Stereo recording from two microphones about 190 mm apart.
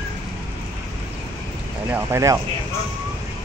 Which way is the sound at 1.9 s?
15° right (ahead or behind).